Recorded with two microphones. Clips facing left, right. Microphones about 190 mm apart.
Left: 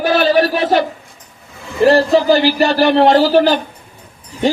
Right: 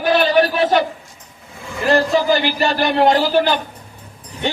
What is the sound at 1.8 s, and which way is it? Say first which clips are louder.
A man's voice: left 5 dB; 35° left (ahead or behind).